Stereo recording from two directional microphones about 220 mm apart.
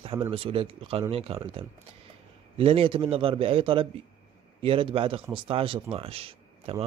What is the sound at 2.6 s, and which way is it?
A man's voice, 25° right (ahead or behind).